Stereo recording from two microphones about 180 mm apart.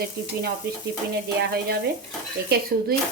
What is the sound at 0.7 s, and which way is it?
Speech, 60° right (ahead or behind).